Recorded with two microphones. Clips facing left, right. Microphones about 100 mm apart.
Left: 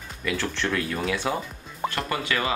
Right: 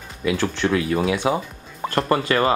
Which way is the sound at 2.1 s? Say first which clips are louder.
Right 10 dB; 40° right (ahead or behind).